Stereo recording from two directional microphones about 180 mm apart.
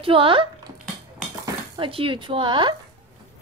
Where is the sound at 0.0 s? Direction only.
30° right (ahead or behind).